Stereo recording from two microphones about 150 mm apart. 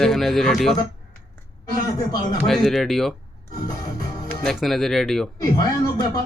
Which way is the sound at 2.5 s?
Centre (ahead or behind).